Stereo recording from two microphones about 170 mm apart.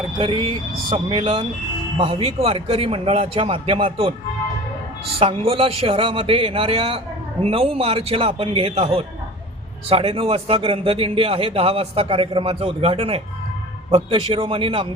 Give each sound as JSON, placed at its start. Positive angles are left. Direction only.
{"t": 0.9, "sound": "speech", "side_deg": -30}
{"t": 5.2, "sound": "speech", "side_deg": -35}